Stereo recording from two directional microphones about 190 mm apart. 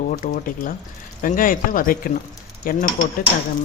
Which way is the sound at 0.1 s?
45° left (ahead or behind).